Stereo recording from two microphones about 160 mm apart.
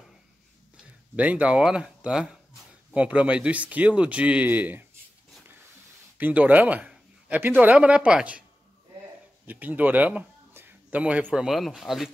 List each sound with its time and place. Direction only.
1.1 s speech: 10° right (ahead or behind)
6.1 s a man's voice: 10° right (ahead or behind)
9.5 s speech: 10° right (ahead or behind)